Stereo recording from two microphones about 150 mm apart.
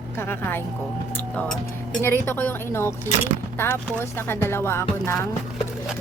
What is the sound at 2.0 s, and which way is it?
Speech, 15° left (ahead or behind).